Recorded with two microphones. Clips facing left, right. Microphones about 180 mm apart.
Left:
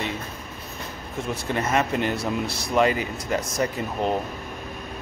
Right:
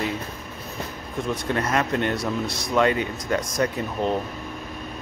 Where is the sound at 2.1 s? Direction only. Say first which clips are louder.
Even; 30° left (ahead or behind).